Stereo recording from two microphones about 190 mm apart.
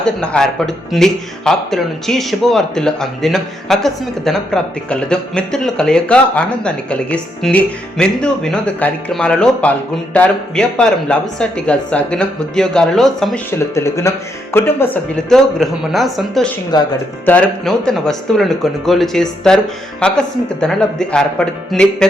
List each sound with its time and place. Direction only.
0.0 s speech: 5° left (ahead or behind)
13.7 s speech: 15° left (ahead or behind)
16.7 s speech: 20° left (ahead or behind)
17.2 s speech: 5° left (ahead or behind)